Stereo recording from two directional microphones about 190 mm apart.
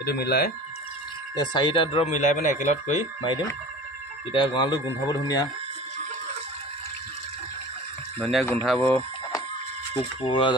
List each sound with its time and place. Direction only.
0.0 s speech: 55° left (ahead or behind)
1.3 s speech: 20° left (ahead or behind)
8.2 s speech: 5° left (ahead or behind)
10.2 s speech: 25° left (ahead or behind)